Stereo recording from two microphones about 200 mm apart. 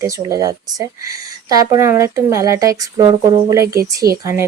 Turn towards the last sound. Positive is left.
turn(degrees=-15)  # may be behind; listen again after turning